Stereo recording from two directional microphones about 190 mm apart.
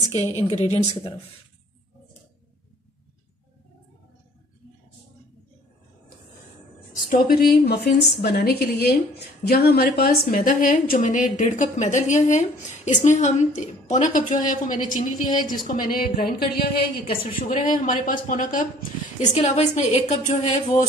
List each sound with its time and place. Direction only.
0.0 s a woman's voice: 20° right (ahead or behind)
0.4 s a woman's voice: 35° left (ahead or behind)
7.1 s a woman's voice: 50° left (ahead or behind)
17.3 s a woman's voice: 40° left (ahead or behind)